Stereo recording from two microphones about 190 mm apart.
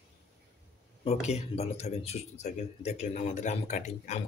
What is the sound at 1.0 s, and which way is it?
Speech, 35° left (ahead or behind).